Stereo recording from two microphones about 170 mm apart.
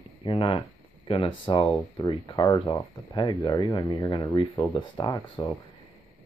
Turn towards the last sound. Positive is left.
turn(degrees=20)  # may be behind; listen again after turning